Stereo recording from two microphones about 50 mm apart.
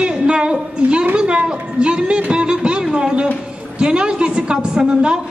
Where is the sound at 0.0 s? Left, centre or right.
Right.